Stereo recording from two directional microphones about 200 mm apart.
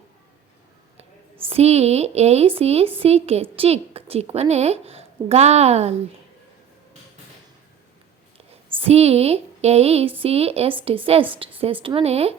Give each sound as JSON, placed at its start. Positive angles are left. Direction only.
{"t": 1.5, "sound": "a woman's voice", "side_deg": -30}
{"t": 8.8, "sound": "a woman's voice", "side_deg": -30}